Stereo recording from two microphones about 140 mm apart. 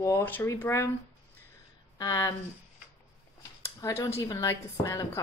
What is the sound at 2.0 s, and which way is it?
Speech, 25° left (ahead or behind).